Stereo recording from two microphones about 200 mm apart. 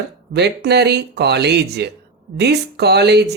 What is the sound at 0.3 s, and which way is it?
Speech, 55° right (ahead or behind).